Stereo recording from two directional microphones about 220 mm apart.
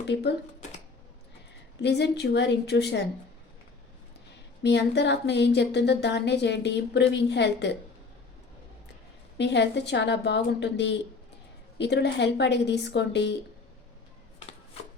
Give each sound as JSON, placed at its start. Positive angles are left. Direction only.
{"t": 0.1, "sound": "speech", "side_deg": 50}
{"t": 1.8, "sound": "speech", "side_deg": 50}
{"t": 4.6, "sound": "speech", "side_deg": 50}
{"t": 9.4, "sound": "speech", "side_deg": 50}